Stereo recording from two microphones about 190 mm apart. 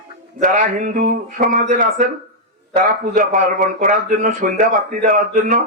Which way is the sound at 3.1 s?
45° right (ahead or behind).